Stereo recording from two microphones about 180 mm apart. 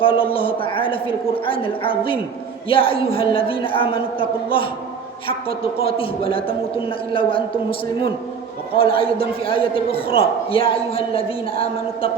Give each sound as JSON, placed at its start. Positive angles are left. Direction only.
{"t": 0.0, "sound": "a woman's voice", "side_deg": 30}
{"t": 8.8, "sound": "a man's voice", "side_deg": 30}